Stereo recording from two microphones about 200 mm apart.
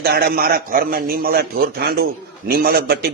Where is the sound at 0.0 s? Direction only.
50° right (ahead or behind).